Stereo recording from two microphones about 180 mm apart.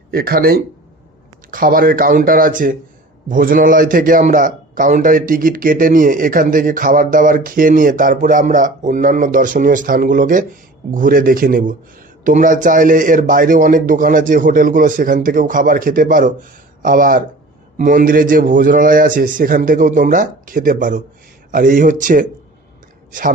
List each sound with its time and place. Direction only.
0.1 s a man's voice: 55° right (ahead or behind)